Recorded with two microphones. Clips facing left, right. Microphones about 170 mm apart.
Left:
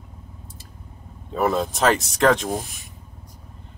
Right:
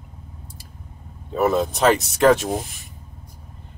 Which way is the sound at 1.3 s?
5° right (ahead or behind).